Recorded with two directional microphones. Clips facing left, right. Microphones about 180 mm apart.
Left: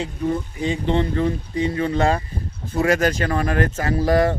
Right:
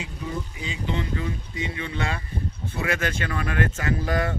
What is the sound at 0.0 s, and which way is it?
Speech, 50° left (ahead or behind).